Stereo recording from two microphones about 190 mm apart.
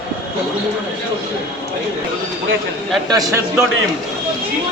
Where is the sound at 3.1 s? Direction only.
15° right (ahead or behind).